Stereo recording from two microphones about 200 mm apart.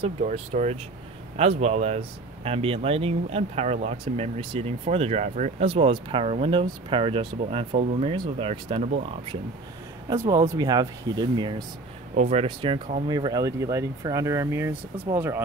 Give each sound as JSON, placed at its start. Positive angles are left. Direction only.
{"t": 0.0, "sound": "speech", "side_deg": -35}
{"t": 10.0, "sound": "speech", "side_deg": -15}
{"t": 12.2, "sound": "speech", "side_deg": -30}